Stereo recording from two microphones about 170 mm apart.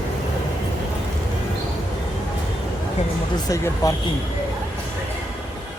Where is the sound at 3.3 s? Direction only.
20° left (ahead or behind).